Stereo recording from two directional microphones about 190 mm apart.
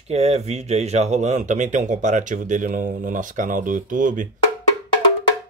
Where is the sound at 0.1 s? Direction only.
35° right (ahead or behind).